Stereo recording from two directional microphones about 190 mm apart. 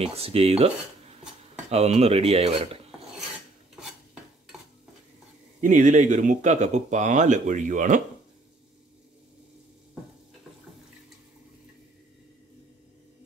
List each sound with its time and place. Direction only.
0.0 s speech: 30° right (ahead or behind)
1.7 s speech: 35° right (ahead or behind)
5.6 s speech: 40° right (ahead or behind)